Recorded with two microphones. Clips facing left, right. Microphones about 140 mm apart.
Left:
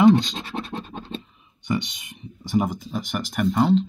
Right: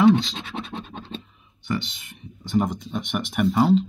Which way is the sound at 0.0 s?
Centre (ahead or behind).